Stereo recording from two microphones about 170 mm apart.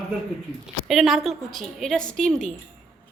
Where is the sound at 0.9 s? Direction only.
Centre (ahead or behind).